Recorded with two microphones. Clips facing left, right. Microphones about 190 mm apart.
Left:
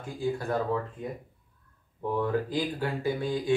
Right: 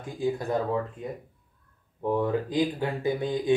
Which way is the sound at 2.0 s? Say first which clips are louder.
Right 2 dB; 20° right (ahead or behind).